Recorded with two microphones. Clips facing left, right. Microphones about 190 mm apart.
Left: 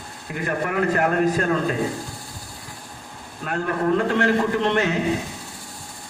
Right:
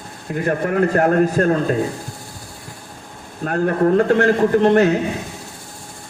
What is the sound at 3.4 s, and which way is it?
A man's voice, 45° right (ahead or behind).